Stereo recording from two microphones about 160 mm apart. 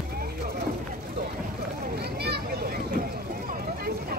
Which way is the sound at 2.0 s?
90° right.